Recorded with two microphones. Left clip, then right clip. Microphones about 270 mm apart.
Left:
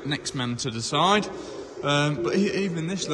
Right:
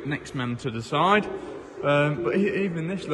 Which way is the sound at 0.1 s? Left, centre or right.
Centre.